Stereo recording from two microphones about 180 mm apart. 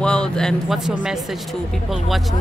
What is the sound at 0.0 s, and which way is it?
A man's voice, 5° left (ahead or behind).